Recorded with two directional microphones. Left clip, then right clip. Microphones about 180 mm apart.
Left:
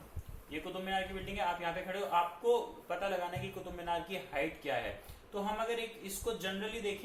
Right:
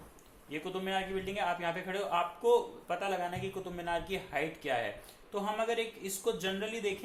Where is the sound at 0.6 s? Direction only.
55° right (ahead or behind).